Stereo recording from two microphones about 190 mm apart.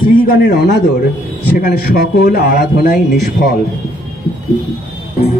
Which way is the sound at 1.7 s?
55° left (ahead or behind).